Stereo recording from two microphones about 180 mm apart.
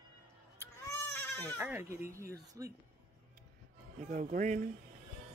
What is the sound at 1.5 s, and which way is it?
Speech, 10° right (ahead or behind).